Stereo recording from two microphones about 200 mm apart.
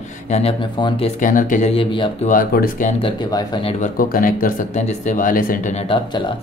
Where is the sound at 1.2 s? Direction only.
40° left (ahead or behind).